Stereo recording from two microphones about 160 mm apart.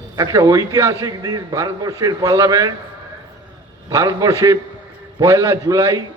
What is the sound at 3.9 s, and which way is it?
A man's voice, 25° right (ahead or behind).